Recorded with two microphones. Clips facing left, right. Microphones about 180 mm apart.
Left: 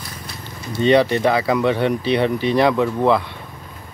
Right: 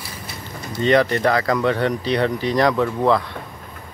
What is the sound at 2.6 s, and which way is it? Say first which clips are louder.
Speech: right 1 dB; 10° left (ahead or behind).